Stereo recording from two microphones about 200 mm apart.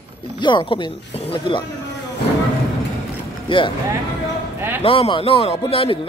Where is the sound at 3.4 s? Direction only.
25° left (ahead or behind).